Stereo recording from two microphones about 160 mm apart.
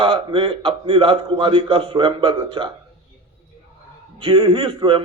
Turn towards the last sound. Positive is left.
turn(degrees=-30)  # may be behind; listen again after turning